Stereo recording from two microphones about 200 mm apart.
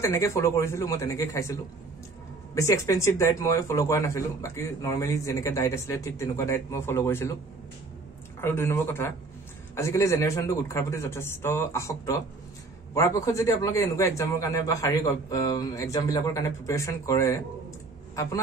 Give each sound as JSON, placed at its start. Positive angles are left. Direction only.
{"t": 0.0, "sound": "speech", "side_deg": 15}
{"t": 8.4, "sound": "speech", "side_deg": 10}